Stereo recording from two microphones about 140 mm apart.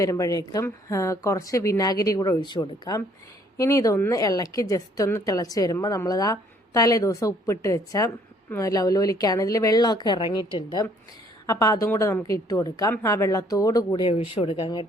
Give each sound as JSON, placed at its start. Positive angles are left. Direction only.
{"t": 0.0, "sound": "speech", "side_deg": 25}
{"t": 14.1, "sound": "speech", "side_deg": 45}